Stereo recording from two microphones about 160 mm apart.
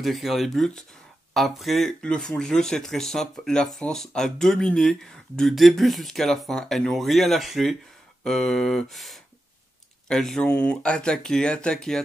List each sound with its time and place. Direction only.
0.0 s speech: centre (ahead or behind)